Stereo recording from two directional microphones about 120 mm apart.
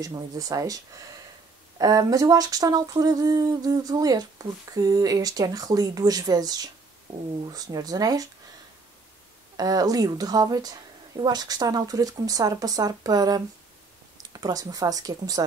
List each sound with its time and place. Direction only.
0.0 s speech: 30° right (ahead or behind)
1.8 s humming: 30° right (ahead or behind)
9.6 s humming: 30° right (ahead or behind)